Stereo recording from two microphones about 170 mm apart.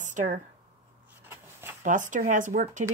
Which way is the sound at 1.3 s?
15° right (ahead or behind).